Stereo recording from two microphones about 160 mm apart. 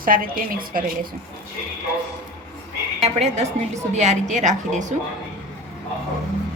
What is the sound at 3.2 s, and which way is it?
A woman's voice, 45° right (ahead or behind).